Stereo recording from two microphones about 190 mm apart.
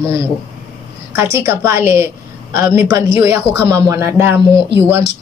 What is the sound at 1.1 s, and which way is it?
A woman's voice, 15° right (ahead or behind).